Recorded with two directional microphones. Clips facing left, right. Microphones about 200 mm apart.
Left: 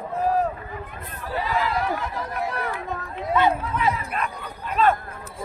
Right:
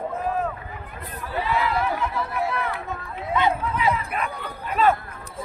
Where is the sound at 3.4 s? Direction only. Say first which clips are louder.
Left 1 dB; 10° right (ahead or behind).